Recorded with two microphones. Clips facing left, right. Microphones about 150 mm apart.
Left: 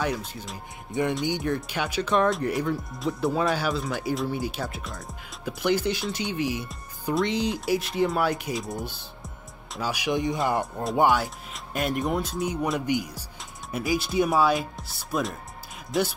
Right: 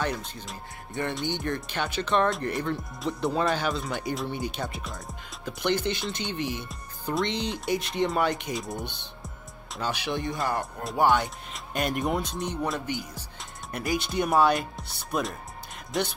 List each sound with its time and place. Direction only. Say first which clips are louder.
0.0 s speech: left 2 dB; 5° left (ahead or behind)
11.1 s speech: even; centre (ahead or behind)